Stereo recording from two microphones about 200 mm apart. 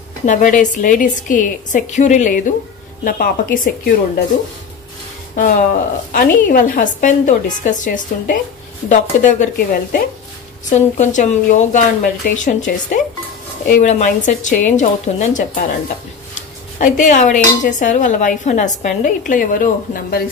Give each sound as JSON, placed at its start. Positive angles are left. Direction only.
{"t": 0.2, "sound": "speech", "side_deg": 40}
{"t": 5.3, "sound": "speech", "side_deg": 40}